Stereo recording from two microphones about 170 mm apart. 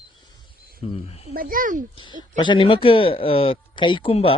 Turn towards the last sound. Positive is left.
turn(degrees=35)  # may be behind; listen again after turning